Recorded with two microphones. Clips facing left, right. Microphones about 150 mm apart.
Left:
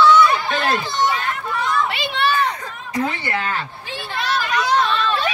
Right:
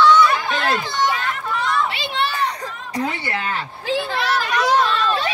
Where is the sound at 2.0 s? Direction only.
60° left (ahead or behind).